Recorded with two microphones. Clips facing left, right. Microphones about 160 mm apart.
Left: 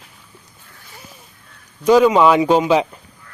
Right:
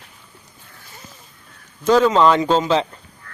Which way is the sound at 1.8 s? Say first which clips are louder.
Left 2 dB; 10° left (ahead or behind).